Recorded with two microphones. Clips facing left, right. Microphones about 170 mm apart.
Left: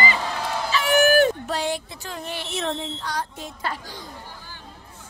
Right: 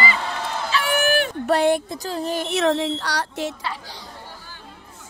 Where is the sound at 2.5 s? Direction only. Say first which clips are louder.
Right 8 dB; 80° right.